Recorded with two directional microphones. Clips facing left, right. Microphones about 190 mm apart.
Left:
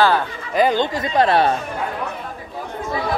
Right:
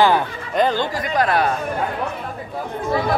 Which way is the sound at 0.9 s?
25° left (ahead or behind).